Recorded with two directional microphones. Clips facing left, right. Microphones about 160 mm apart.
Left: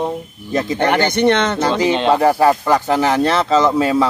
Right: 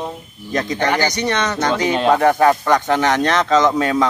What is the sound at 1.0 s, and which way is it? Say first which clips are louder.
Speech: left 5 dB; 55° left (ahead or behind).